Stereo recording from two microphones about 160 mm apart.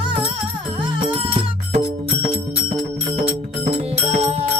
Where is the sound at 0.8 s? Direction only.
35° right (ahead or behind).